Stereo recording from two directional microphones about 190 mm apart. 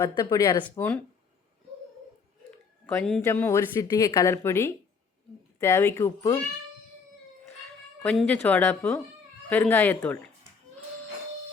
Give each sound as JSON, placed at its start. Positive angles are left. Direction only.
{"t": 0.0, "sound": "a woman's voice", "side_deg": 20}
{"t": 2.8, "sound": "a woman's voice", "side_deg": 10}
{"t": 8.0, "sound": "a woman's voice", "side_deg": 5}